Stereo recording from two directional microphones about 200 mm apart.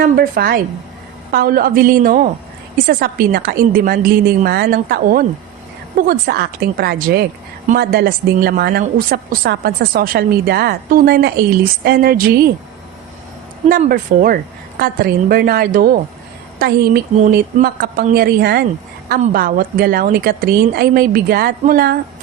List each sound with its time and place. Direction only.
0.0 s speech: 50° right (ahead or behind)
13.7 s speech: 45° right (ahead or behind)